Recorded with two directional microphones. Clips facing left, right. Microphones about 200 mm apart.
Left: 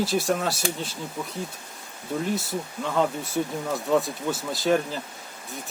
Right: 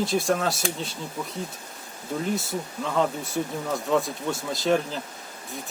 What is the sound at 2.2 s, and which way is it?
Speech, centre (ahead or behind).